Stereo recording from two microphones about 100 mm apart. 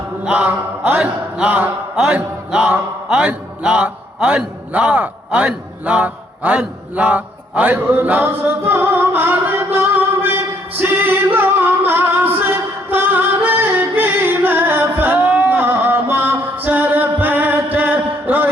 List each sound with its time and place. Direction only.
0.3 s music: 15° right (ahead or behind)
12.9 s singing: 20° right (ahead or behind)